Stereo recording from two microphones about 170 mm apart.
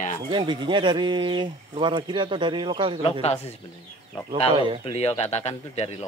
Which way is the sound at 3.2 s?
40° left (ahead or behind).